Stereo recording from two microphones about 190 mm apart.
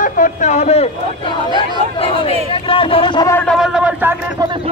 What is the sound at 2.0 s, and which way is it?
Speech, 30° left (ahead or behind).